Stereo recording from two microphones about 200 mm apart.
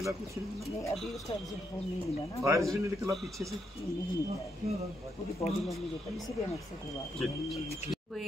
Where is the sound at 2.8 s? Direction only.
15° right (ahead or behind).